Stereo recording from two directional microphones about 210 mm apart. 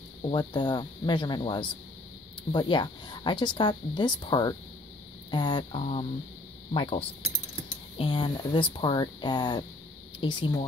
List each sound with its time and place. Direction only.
0.2 s speech: 20° left (ahead or behind)